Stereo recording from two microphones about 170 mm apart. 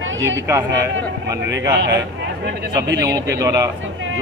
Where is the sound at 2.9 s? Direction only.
20° right (ahead or behind).